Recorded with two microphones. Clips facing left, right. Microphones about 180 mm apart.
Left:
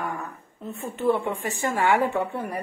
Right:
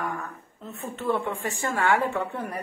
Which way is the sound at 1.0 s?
10° left (ahead or behind).